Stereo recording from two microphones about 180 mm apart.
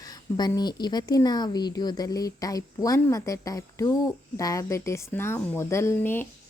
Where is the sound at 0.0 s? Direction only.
20° left (ahead or behind).